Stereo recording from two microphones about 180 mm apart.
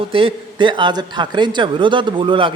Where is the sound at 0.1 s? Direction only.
30° right (ahead or behind).